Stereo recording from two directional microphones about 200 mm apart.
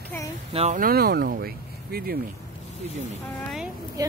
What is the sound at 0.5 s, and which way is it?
Speech, 35° right (ahead or behind).